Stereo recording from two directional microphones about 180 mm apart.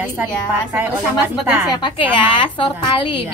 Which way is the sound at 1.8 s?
25° left (ahead or behind).